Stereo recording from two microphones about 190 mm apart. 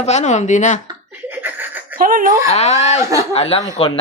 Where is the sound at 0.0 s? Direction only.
35° left (ahead or behind).